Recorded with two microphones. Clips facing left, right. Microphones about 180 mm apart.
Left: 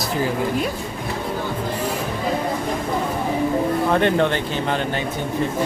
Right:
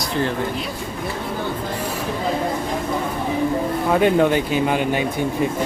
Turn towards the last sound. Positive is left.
turn(degrees=-10)  # may be behind; listen again after turning